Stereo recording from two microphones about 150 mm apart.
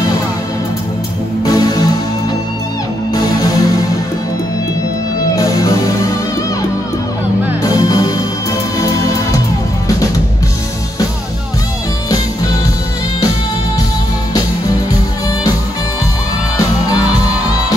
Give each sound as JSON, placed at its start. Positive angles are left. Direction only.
{"t": 1.4, "sound": "music", "side_deg": 25}
{"t": 3.3, "sound": "music", "side_deg": 25}
{"t": 5.3, "sound": "music", "side_deg": 20}
{"t": 7.6, "sound": "music", "side_deg": 20}